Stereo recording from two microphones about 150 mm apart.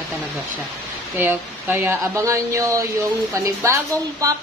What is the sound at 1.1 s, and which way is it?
Speech, 15° right (ahead or behind).